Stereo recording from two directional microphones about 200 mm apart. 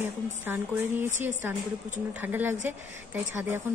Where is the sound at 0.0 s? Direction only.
10° right (ahead or behind).